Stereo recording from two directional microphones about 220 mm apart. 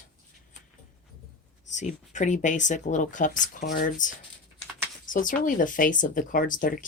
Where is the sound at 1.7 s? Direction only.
35° left (ahead or behind).